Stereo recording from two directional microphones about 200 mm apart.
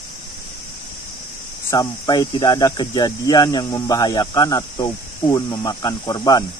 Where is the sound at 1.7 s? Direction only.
20° left (ahead or behind).